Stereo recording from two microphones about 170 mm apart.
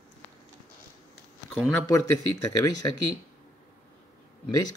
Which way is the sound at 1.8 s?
20° left (ahead or behind).